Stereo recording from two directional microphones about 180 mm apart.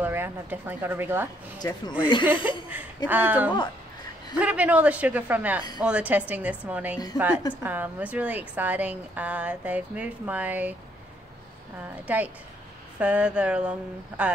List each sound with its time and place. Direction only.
0.0 s a woman's voice: 10° right (ahead or behind)
1.6 s speech: 25° left (ahead or behind)
3.1 s a woman's voice: 10° right (ahead or behind)
12.1 s a woman's voice: 10° right (ahead or behind)